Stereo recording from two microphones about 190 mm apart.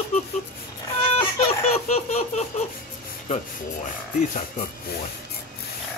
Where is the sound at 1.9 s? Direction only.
35° left (ahead or behind).